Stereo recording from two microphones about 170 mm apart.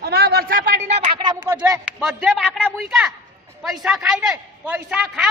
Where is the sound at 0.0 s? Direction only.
65° right (ahead or behind).